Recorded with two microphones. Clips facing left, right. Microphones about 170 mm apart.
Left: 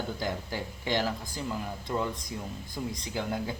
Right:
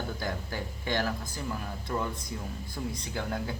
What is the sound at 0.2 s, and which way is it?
Speech, 20° left (ahead or behind).